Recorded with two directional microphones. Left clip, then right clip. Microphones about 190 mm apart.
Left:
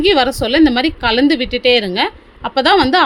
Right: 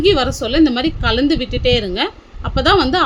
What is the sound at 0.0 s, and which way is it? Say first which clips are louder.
A woman's voice: left 2 dB; 20° left (ahead or behind).